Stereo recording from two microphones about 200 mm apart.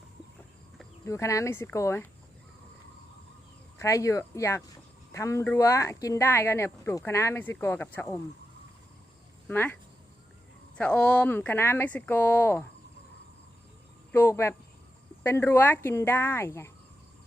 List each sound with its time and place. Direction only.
1.0 s speech: 15° left (ahead or behind)
3.8 s speech: 15° left (ahead or behind)
9.5 s speech: 10° left (ahead or behind)
10.8 s speech: 5° left (ahead or behind)
14.1 s speech: 15° left (ahead or behind)